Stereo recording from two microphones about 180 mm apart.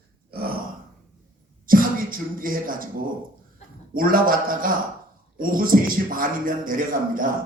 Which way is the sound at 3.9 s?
50° right (ahead or behind).